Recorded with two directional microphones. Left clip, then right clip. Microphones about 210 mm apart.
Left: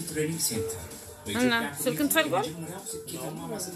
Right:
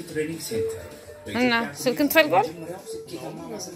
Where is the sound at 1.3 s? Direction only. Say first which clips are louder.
Right 4 dB; 15° right (ahead or behind).